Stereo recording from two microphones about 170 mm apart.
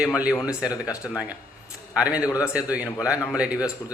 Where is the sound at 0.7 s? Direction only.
20° left (ahead or behind).